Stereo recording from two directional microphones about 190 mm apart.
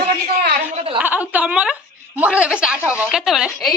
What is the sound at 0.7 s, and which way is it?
Speech, 30° right (ahead or behind).